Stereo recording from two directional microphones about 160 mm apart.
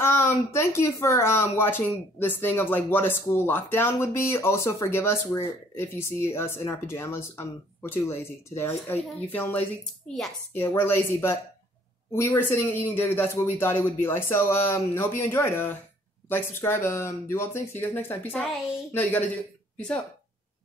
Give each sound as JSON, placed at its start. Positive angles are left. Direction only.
{"t": 0.0, "sound": "speech", "side_deg": 15}